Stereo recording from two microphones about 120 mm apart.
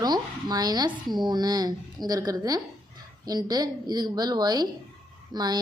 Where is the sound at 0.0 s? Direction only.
35° right (ahead or behind).